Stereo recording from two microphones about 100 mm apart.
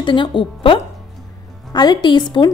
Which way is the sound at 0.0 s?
50° left (ahead or behind).